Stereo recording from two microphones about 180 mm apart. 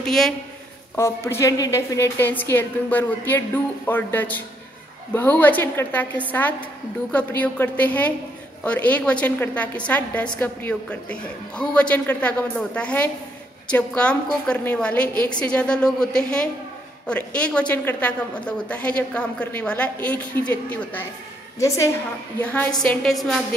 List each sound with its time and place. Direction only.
0.0 s a man's voice: centre (ahead or behind)
0.9 s a woman's voice: 15° left (ahead or behind)